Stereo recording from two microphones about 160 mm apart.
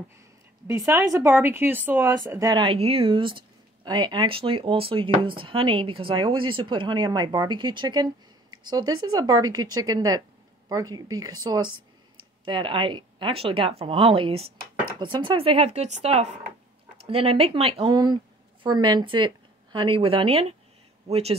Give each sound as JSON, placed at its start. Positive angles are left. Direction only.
{"t": 0.7, "sound": "a woman's voice", "side_deg": -20}